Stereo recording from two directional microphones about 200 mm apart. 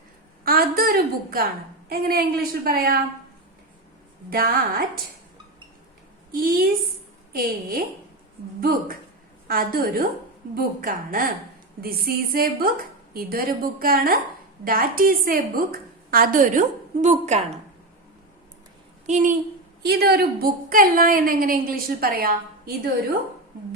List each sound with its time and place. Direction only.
0.4 s a sound: 45° right (ahead or behind)
1.9 s a woman's voice: 50° right (ahead or behind)
4.3 s a woman's voice: 45° right (ahead or behind)
6.3 s a woman's voice: 45° right (ahead or behind)
9.5 s a woman's voice: 45° right (ahead or behind)
19.0 s a woman's voice: 40° right (ahead or behind)
19.8 s a woman's voice: 55° right (ahead or behind)